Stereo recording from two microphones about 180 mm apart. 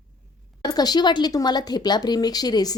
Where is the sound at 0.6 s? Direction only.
20° left (ahead or behind).